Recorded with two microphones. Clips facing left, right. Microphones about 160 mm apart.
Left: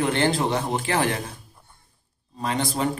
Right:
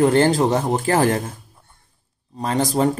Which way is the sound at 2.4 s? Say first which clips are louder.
Right 6 dB; 40° right (ahead or behind).